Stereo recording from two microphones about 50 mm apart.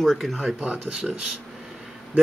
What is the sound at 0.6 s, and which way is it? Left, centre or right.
Speech, right.